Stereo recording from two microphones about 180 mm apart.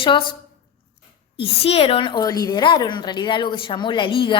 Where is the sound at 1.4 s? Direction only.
30° left (ahead or behind).